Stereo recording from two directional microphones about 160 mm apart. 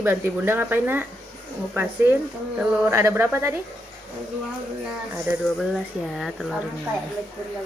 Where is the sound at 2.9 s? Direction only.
15° right (ahead or behind).